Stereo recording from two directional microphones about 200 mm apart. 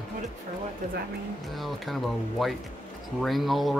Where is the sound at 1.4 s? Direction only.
Centre (ahead or behind).